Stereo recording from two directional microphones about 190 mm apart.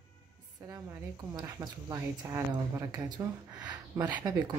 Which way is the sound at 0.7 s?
15° right (ahead or behind).